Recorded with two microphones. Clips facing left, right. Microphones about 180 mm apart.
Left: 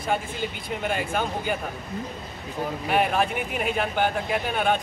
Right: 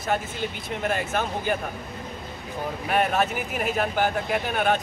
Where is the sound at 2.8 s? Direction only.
Centre (ahead or behind).